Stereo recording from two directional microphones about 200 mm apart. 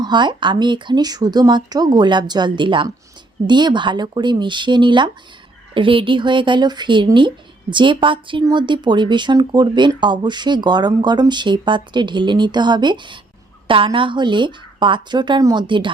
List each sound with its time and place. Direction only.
0.0 s speech: 20° right (ahead or behind)